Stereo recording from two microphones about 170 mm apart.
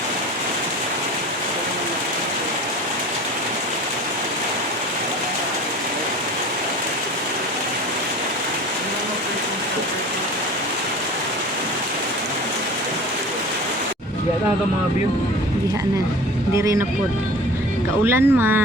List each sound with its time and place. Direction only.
16.6 s speech: 15° right (ahead or behind)
17.9 s speech: 15° right (ahead or behind)